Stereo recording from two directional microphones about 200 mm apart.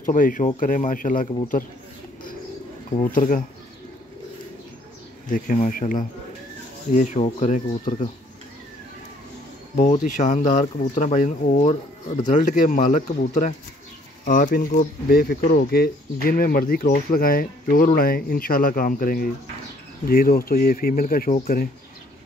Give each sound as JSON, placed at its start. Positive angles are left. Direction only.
{"t": 0.0, "sound": "speech", "side_deg": 40}
{"t": 3.0, "sound": "speech", "side_deg": 40}
{"t": 5.3, "sound": "speech", "side_deg": 40}
{"t": 10.0, "sound": "speech", "side_deg": 40}